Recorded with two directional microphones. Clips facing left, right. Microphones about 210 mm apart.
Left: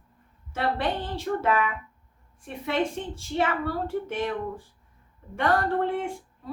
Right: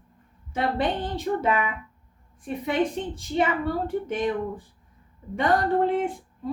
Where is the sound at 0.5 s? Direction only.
20° right (ahead or behind).